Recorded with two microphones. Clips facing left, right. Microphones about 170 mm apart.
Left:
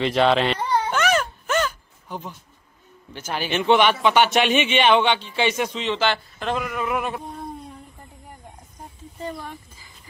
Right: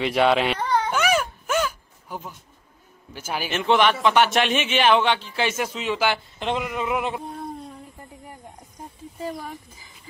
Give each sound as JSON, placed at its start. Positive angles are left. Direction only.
{"t": 0.0, "sound": "speech", "side_deg": -10}
{"t": 0.6, "sound": "baby cry", "side_deg": 10}
{"t": 0.9, "sound": "a sound", "side_deg": -10}
{"t": 3.1, "sound": "a man's voice", "side_deg": -5}